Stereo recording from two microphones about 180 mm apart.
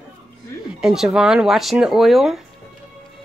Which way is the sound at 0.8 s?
5° right (ahead or behind).